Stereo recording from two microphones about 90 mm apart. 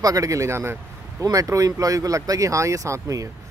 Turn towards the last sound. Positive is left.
turn(degrees=-40)  # may be behind; listen again after turning